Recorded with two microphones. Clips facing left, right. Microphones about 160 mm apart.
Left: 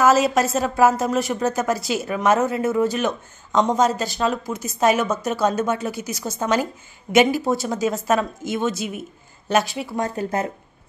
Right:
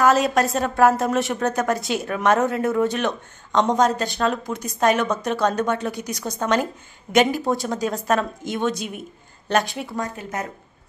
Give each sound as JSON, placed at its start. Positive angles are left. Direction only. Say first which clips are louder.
{"t": 0.0, "sound": "a woman's voice", "louder": "left 1 dB", "side_deg": 5}
{"t": 10.1, "sound": "speech", "louder": "left 6 dB", "side_deg": 30}